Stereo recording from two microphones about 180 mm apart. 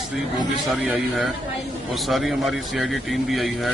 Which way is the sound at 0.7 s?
5° right (ahead or behind).